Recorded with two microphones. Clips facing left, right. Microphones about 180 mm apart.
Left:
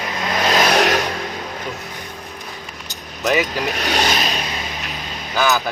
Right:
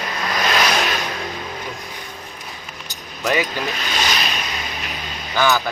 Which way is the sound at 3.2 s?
Centre (ahead or behind).